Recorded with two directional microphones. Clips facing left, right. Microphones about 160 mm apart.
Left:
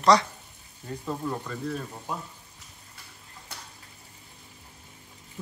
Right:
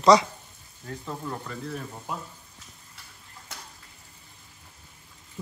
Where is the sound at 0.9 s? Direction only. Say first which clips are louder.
Left 3 dB; 15° left (ahead or behind).